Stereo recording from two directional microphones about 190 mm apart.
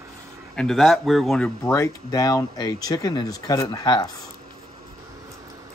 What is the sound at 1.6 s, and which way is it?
Speech, 15° left (ahead or behind).